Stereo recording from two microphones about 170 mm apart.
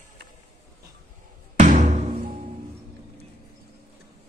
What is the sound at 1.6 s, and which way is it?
Music, 45° right (ahead or behind).